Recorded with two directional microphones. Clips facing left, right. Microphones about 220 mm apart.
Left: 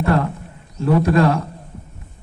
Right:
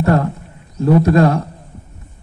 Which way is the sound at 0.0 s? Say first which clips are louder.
Right 3 dB; 35° right (ahead or behind).